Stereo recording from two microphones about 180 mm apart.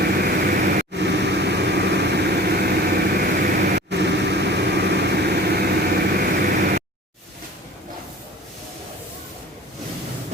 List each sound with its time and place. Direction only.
0.0 s vehicle: 55° right (ahead or behind)